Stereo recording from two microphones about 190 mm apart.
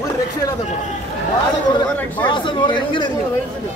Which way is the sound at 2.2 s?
25° left (ahead or behind).